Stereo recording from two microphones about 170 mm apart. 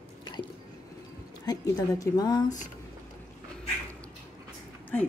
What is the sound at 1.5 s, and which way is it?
Speech, 20° left (ahead or behind).